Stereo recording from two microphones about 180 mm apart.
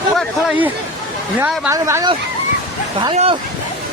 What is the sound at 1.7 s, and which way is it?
Speech, 20° right (ahead or behind).